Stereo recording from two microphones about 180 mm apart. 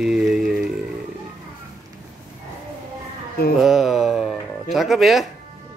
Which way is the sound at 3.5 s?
5° right (ahead or behind).